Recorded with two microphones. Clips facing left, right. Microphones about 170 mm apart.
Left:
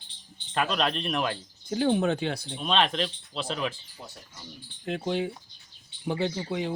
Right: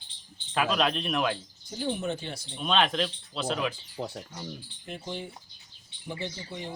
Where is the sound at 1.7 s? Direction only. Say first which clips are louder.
Left 7 dB; 85° left.